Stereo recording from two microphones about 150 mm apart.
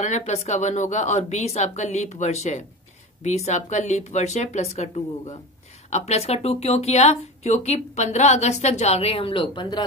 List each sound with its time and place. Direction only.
0.0 s speech: 50° left (ahead or behind); by 9.8 s 30° left (ahead or behind)